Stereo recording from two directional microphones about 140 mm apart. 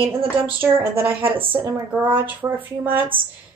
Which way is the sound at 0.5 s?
15° right (ahead or behind).